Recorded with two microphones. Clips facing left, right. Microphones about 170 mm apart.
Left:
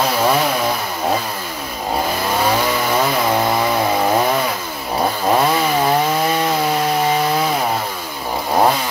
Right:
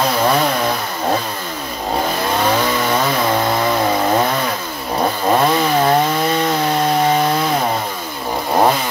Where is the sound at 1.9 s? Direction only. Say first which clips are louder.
Right 1 dB; 5° left (ahead or behind).